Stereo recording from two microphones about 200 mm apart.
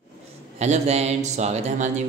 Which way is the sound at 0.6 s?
35° right (ahead or behind).